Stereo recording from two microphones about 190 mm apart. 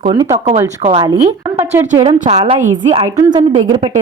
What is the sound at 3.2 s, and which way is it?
Speech, 20° right (ahead or behind).